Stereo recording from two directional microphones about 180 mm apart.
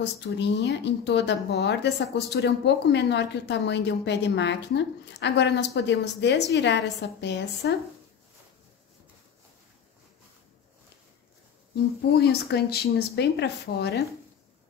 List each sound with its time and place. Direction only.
0.0 s speech: 75° left (ahead or behind)
12.2 s speech: 60° left (ahead or behind)